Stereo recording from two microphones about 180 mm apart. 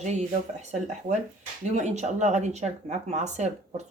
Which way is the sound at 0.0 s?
40° right (ahead or behind).